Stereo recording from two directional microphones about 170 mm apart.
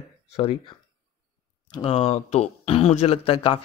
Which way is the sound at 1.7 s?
30° left (ahead or behind).